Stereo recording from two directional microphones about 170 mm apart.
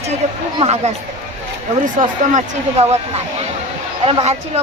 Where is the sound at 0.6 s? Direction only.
40° right (ahead or behind).